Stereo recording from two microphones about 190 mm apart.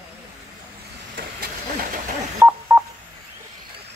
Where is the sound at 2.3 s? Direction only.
10° right (ahead or behind).